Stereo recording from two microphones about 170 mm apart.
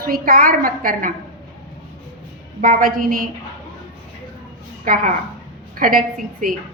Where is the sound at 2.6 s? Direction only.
55° right (ahead or behind).